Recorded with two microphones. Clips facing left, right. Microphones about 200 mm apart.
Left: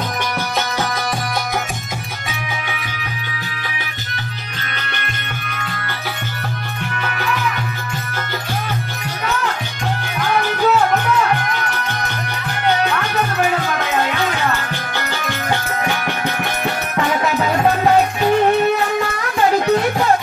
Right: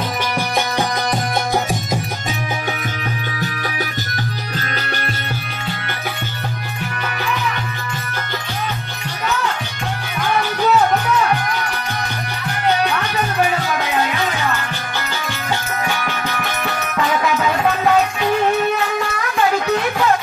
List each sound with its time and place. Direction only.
16.3 s music: 20° left (ahead or behind)
17.4 s music: 30° left (ahead or behind)
19.6 s music: 35° left (ahead or behind)